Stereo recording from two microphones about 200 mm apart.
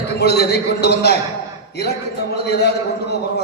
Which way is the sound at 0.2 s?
55° left (ahead or behind).